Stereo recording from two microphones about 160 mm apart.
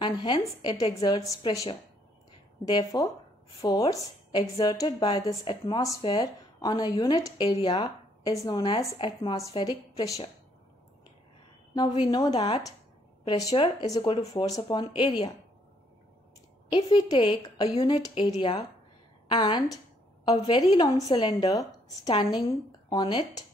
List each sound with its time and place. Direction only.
0.0 s a woman's voice: 30° left (ahead or behind)
11.7 s a woman's voice: 30° left (ahead or behind)
16.7 s a woman's voice: 30° left (ahead or behind)
19.3 s a woman's voice: 25° left (ahead or behind)